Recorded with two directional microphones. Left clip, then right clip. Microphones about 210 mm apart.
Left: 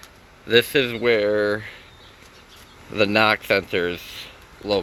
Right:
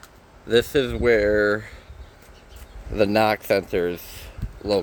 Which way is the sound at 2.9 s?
10° right (ahead or behind).